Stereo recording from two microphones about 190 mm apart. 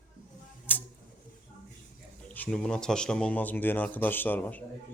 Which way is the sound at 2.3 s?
5° left (ahead or behind).